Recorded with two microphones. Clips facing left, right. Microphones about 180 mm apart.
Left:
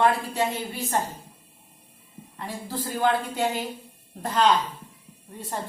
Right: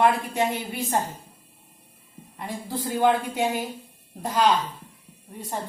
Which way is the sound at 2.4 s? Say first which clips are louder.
Right 1 dB; 15° right (ahead or behind).